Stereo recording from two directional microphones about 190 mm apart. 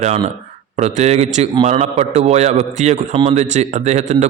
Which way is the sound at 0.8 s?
35° right (ahead or behind).